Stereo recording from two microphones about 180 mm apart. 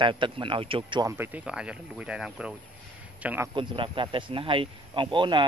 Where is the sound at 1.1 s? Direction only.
10° right (ahead or behind).